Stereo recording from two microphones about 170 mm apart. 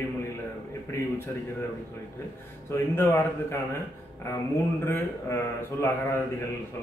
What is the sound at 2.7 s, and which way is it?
Speech, 15° left (ahead or behind).